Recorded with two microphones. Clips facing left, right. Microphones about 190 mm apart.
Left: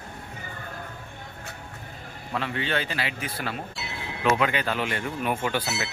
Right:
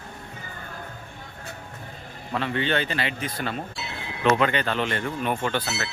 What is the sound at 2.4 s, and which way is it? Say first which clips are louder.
Speech: right 3 dB; 5° left (ahead or behind).